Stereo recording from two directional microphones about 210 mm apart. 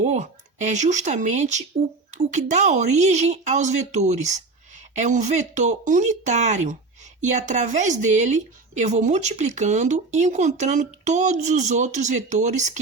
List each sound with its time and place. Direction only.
0.0 s a woman's voice: 35° right (ahead or behind)